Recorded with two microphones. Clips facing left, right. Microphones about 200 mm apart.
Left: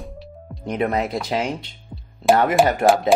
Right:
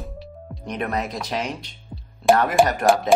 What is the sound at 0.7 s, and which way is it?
Speech, 25° left (ahead or behind).